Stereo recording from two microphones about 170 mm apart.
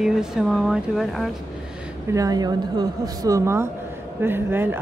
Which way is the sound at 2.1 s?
20° right (ahead or behind).